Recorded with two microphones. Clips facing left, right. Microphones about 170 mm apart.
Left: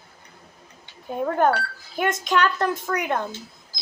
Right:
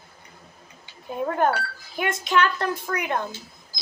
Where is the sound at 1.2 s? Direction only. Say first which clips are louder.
Left 2 dB; 45° left (ahead or behind).